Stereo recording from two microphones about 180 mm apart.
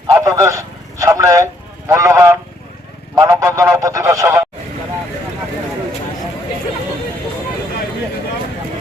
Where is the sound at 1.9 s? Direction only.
15° right (ahead or behind).